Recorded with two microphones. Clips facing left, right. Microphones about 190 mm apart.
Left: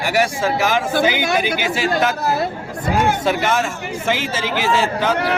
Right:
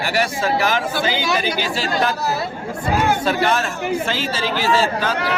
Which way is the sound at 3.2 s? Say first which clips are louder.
Even; 20° left (ahead or behind).